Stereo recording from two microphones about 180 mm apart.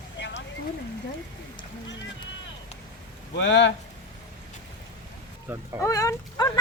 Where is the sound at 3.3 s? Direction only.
80° left.